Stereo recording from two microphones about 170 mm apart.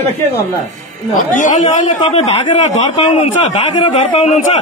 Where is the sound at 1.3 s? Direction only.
50° left (ahead or behind).